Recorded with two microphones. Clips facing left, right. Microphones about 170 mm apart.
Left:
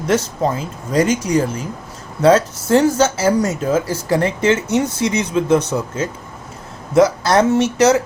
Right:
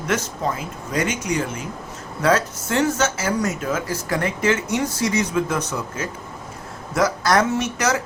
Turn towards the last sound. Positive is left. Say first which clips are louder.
# left 8 dB
turn(degrees=25)  # may be behind; listen again after turning